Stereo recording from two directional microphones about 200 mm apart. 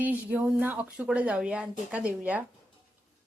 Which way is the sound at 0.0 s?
10° right (ahead or behind).